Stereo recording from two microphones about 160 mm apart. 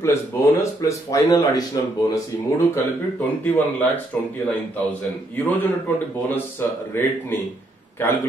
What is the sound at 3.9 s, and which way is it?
A man's voice, 10° left (ahead or behind).